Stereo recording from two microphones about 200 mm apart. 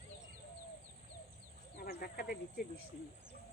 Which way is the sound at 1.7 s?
50° left (ahead or behind).